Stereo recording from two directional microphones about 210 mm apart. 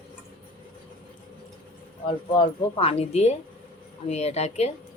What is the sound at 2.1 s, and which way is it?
A woman's voice, 25° left (ahead or behind).